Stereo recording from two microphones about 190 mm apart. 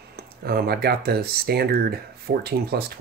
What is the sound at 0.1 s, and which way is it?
Speech, 55° right (ahead or behind).